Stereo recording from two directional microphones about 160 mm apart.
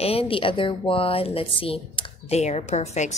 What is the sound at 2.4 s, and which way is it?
Speech, 45° left (ahead or behind).